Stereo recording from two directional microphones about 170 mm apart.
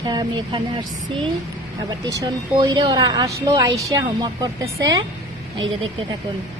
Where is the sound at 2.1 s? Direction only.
20° right (ahead or behind).